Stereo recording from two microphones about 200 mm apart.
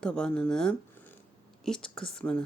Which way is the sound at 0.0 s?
5° left (ahead or behind).